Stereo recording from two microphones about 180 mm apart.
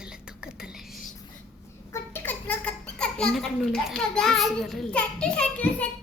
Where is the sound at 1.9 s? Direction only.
10° left (ahead or behind).